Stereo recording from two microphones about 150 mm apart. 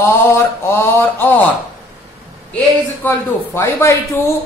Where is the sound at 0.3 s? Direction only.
15° left (ahead or behind).